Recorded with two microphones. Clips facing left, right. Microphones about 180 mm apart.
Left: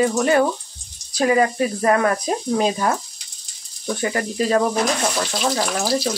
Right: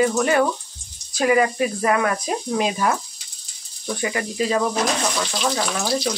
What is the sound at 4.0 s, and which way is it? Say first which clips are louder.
Speech: left 2 dB; 40° left (ahead or behind).